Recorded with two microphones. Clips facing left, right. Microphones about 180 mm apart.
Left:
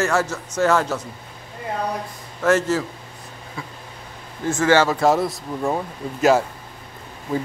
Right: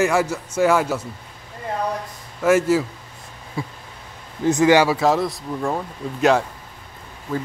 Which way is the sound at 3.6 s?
30° right (ahead or behind).